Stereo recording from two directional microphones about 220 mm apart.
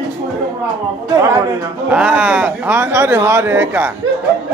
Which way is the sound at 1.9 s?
5° right (ahead or behind).